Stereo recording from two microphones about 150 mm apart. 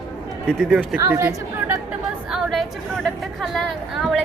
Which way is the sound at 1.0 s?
15° right (ahead or behind).